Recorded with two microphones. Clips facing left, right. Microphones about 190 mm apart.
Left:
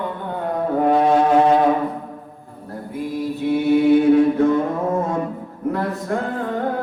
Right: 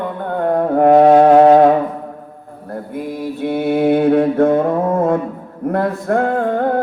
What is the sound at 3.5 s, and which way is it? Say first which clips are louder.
Mantra: even; 55° right (ahead or behind).